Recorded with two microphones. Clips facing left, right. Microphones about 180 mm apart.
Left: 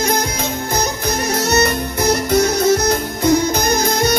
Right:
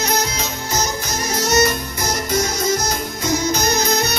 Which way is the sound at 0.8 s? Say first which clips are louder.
Left 2 dB; 60° left (ahead or behind).